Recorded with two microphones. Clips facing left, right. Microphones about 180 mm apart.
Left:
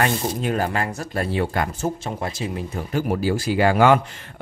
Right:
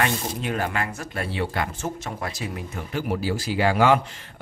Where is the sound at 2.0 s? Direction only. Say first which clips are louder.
Left 4 dB; 25° left (ahead or behind).